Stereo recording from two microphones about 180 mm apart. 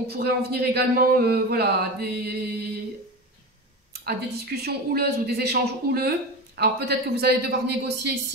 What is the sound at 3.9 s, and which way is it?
Speech, 60° right (ahead or behind).